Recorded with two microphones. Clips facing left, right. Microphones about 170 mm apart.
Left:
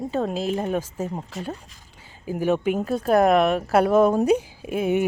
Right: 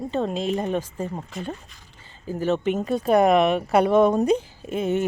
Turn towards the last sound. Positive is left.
turn(degrees=10)  # may be behind; listen again after turning